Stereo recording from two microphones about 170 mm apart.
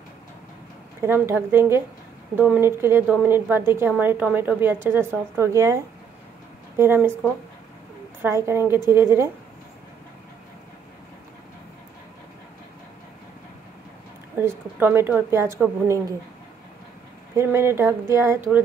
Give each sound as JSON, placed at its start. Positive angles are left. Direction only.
{"t": 1.0, "sound": "a woman's voice", "side_deg": -15}
{"t": 6.8, "sound": "a woman's voice", "side_deg": -15}
{"t": 8.2, "sound": "a woman's voice", "side_deg": -15}
{"t": 14.8, "sound": "a woman's voice", "side_deg": -10}
{"t": 17.4, "sound": "a woman's voice", "side_deg": -15}